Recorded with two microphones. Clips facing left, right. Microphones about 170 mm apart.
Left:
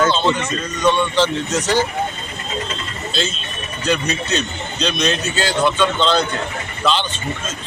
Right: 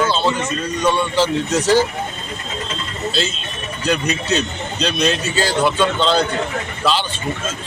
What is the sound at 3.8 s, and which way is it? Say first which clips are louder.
A man's voice: even; 5° right (ahead or behind).